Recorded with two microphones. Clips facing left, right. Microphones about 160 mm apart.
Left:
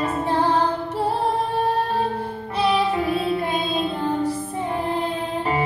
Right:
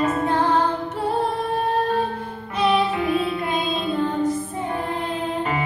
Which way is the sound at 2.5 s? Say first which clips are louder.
Even; 35° left (ahead or behind).